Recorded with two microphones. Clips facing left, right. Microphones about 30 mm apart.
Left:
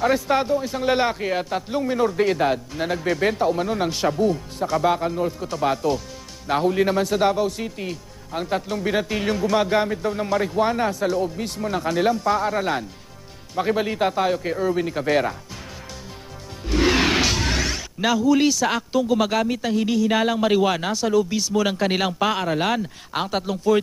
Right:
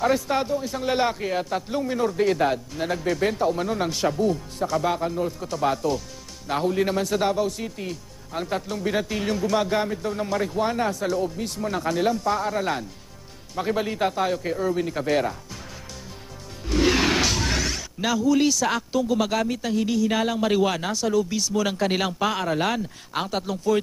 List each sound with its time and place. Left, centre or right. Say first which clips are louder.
0.0 s speech: left 2 dB; centre
16.6 s speech: left 2 dB; centre